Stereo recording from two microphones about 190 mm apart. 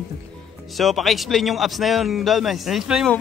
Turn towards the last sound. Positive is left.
turn(degrees=0)  # may be behind; listen again after turning